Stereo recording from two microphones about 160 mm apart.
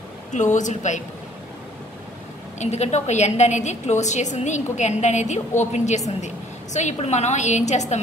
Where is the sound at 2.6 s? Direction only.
45° left (ahead or behind).